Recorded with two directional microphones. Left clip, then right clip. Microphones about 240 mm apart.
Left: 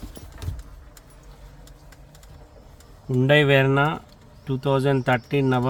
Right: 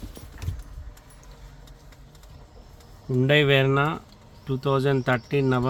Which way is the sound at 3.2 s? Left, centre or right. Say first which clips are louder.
Left 2 dB; centre.